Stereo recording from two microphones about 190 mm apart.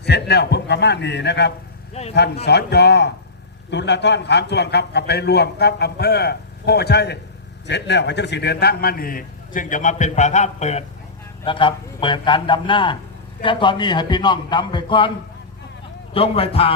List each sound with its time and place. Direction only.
0.0 s a man's voice: 60° left (ahead or behind)
1.9 s speech: 35° left (ahead or behind)
2.1 s a man's voice: 60° left (ahead or behind); by 15.1 s 25° left (ahead or behind)
16.1 s a man's voice: 30° left (ahead or behind)